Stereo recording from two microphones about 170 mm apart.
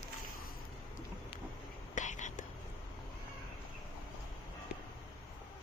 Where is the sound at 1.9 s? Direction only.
45° left (ahead or behind).